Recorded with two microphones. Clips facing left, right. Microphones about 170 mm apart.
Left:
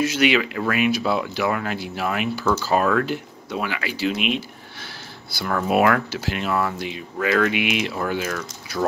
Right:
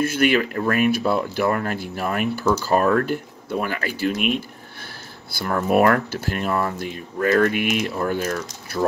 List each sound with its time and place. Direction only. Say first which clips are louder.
0.0 s speech: right 1 dB; 55° right (ahead or behind)